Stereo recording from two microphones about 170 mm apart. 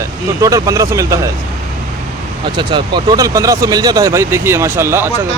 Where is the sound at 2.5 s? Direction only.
25° right (ahead or behind).